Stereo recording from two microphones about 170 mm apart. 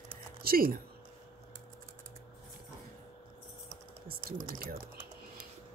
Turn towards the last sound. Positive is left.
turn(degrees=-60)  # may be behind; listen again after turning